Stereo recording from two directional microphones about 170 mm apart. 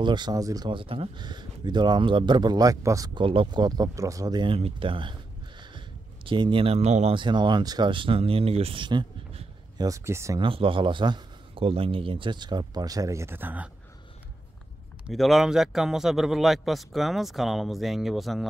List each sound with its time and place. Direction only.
0.0 s a man's voice: 25° right (ahead or behind)
3.3 s a man's voice: 30° right (ahead or behind)
6.2 s speech: 30° right (ahead or behind)
7.2 s a man's voice: 25° right (ahead or behind)
9.8 s a man's voice: 20° right (ahead or behind)
10.4 s a man's voice: 30° right (ahead or behind); by 13.7 s 10° right (ahead or behind)
15.0 s a man's voice: centre (ahead or behind)